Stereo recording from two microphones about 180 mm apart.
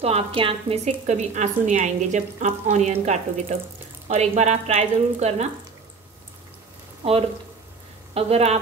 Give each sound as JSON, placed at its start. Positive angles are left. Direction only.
{"t": 0.0, "sound": "a woman's voice", "side_deg": -35}
{"t": 8.1, "sound": "a woman's voice", "side_deg": -35}